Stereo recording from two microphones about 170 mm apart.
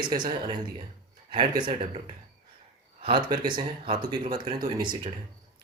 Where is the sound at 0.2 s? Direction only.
25° right (ahead or behind).